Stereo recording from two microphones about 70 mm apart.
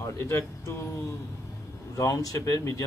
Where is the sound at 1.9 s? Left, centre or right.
Left.